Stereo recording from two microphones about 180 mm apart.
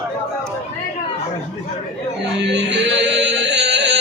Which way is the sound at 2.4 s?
75° right (ahead or behind).